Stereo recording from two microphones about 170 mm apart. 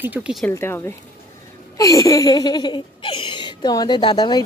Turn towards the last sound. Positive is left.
turn(degrees=25)  # may be behind; listen again after turning